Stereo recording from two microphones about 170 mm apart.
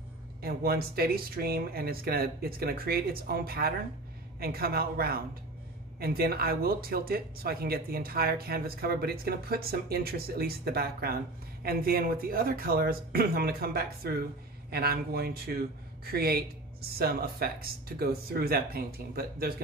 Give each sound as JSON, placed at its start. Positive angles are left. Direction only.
{"t": 0.4, "sound": "speech", "side_deg": -60}